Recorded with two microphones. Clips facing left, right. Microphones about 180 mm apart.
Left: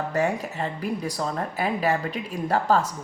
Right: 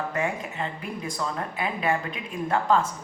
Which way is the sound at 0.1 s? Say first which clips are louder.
Left 4 dB; 40° left (ahead or behind).